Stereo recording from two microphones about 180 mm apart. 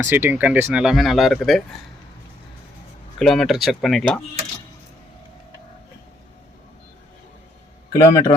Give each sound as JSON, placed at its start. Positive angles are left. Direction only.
{"t": 0.0, "sound": "speech", "side_deg": -10}
{"t": 3.2, "sound": "speech", "side_deg": 0}
{"t": 8.0, "sound": "a man's voice", "side_deg": 20}